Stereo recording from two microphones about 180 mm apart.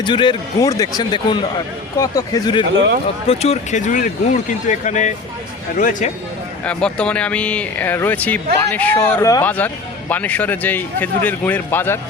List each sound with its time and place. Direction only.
0.0 s speech: 25° left (ahead or behind)
3.2 s speech: 35° left (ahead or behind)
6.7 s a man's voice: 5° left (ahead or behind)